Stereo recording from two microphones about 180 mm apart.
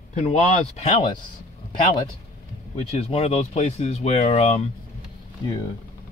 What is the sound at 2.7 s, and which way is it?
Speech, 35° left (ahead or behind).